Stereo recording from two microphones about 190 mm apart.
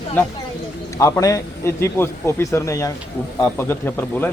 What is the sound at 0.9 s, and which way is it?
Speech, 15° left (ahead or behind).